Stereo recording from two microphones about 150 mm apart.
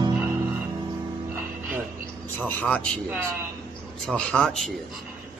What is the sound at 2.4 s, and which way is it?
Speech, 10° left (ahead or behind).